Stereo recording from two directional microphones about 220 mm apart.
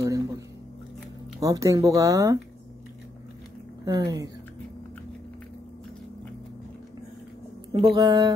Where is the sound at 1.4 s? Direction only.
15° right (ahead or behind).